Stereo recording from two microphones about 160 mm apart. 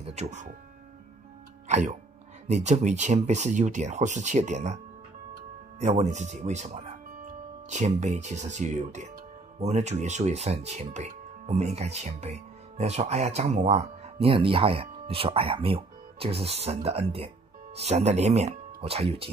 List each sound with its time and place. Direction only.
0.0 s speech: 45° right (ahead or behind)
1.7 s speech: 45° right (ahead or behind)
5.8 s speech: 45° right (ahead or behind)